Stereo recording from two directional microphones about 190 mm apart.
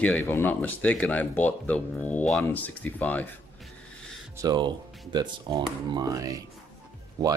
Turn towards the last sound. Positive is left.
turn(degrees=-20)  # may be behind; listen again after turning